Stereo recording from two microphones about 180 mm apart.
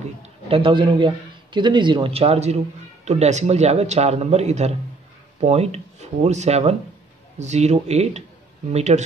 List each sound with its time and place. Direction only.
0.2 s a man's voice: 30° right (ahead or behind)